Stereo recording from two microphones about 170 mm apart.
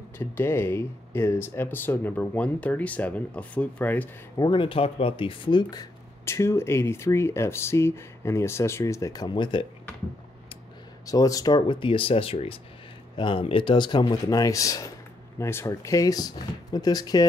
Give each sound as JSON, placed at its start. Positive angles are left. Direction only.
{"t": 0.2, "sound": "speech", "side_deg": 15}
{"t": 4.4, "sound": "speech", "side_deg": 30}
{"t": 11.1, "sound": "speech", "side_deg": 20}